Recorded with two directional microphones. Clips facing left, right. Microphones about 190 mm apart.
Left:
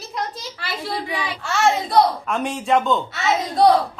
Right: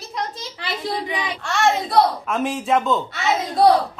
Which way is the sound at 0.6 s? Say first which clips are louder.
Right 2 dB; 20° right (ahead or behind).